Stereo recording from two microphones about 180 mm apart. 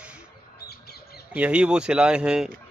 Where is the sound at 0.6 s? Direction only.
60° left (ahead or behind).